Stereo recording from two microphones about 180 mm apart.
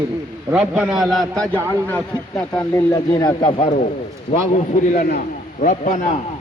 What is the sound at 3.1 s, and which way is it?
Speech, 25° left (ahead or behind).